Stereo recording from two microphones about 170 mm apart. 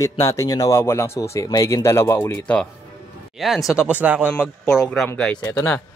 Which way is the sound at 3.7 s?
5° right (ahead or behind).